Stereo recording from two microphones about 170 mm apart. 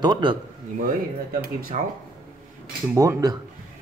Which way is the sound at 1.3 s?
55° right (ahead or behind).